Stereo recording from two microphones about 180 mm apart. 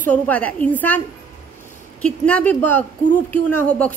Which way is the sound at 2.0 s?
10° left (ahead or behind).